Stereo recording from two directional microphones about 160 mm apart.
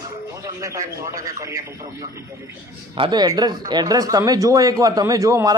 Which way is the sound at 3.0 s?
25° right (ahead or behind).